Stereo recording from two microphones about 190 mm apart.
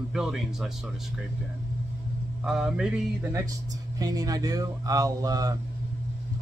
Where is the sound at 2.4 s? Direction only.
5° right (ahead or behind).